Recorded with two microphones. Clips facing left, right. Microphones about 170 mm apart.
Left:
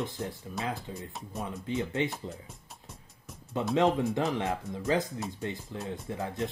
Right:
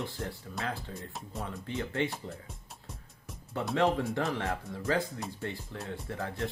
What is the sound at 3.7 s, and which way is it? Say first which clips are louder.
Speech: left 2 dB; 15° left (ahead or behind).